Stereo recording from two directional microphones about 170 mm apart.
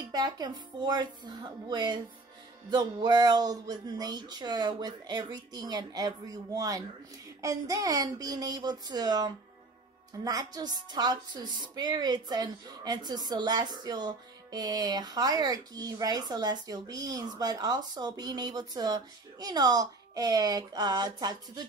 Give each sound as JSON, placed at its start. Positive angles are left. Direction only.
{"t": 0.0, "sound": "a woman's voice", "side_deg": -25}